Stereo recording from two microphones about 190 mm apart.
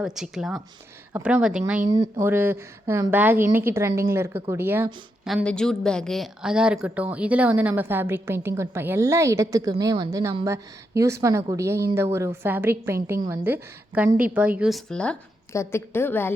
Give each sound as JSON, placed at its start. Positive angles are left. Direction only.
{"t": 0.0, "sound": "a woman's voice", "side_deg": 0}
{"t": 1.9, "sound": "a woman's voice", "side_deg": -20}
{"t": 5.2, "sound": "a woman's voice", "side_deg": 0}